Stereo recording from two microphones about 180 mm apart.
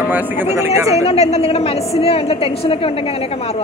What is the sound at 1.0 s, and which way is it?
A woman's voice, 35° left (ahead or behind).